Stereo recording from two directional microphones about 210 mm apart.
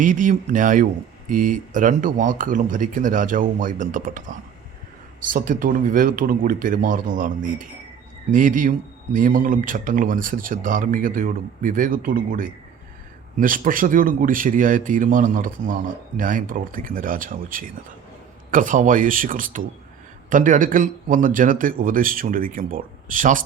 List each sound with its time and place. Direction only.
0.0 s speech: 40° right (ahead or behind)